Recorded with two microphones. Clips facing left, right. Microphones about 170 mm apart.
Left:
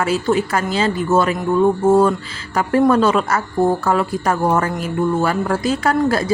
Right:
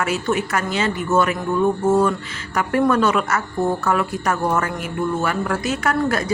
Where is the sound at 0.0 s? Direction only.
30° left (ahead or behind).